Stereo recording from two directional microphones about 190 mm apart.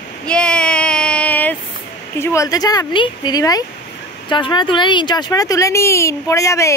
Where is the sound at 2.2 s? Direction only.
15° left (ahead or behind).